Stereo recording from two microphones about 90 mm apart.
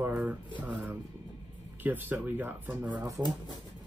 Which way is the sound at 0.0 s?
15° right (ahead or behind).